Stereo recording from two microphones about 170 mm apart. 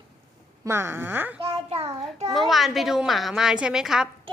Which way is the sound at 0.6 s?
15° right (ahead or behind).